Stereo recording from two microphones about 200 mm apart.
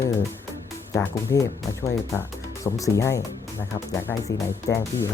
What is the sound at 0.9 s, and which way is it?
Speech, 15° left (ahead or behind).